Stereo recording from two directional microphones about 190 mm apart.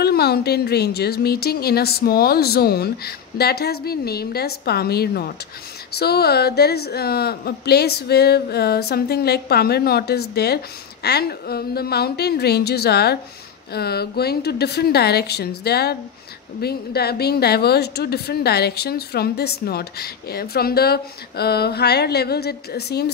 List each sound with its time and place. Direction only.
0.0 s speech: 55° left (ahead or behind)